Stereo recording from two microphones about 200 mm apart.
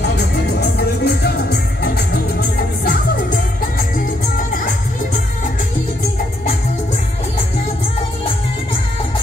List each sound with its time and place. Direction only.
0.6 s music: 55° left (ahead or behind)